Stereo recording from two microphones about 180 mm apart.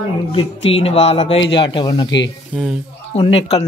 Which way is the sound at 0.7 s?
35° left (ahead or behind).